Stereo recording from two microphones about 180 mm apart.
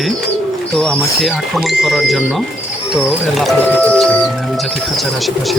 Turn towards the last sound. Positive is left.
turn(degrees=5)  # may be behind; listen again after turning